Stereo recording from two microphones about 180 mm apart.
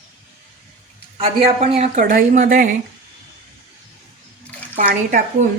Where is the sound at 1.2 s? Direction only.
35° right (ahead or behind).